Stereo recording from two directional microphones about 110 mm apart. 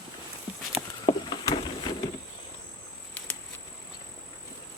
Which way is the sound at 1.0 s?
40° left (ahead or behind).